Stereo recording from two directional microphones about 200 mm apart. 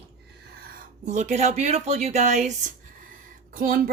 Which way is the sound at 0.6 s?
40° right (ahead or behind).